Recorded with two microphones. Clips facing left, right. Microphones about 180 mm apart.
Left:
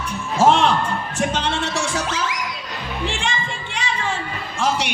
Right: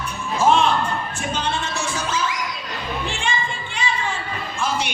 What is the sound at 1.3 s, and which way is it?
Music, 80° left.